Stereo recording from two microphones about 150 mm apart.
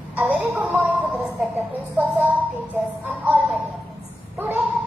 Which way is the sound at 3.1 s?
10° right (ahead or behind).